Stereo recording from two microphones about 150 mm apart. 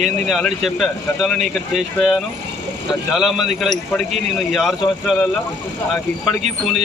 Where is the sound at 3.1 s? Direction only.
Centre (ahead or behind).